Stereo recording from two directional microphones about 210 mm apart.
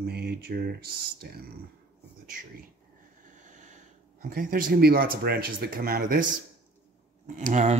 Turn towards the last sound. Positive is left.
turn(degrees=-35)  # may be behind; listen again after turning